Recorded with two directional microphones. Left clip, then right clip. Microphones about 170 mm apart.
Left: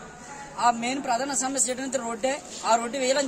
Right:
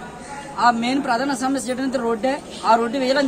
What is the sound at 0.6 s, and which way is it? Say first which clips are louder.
A woman's voice: right 6 dB; 10° left (ahead or behind).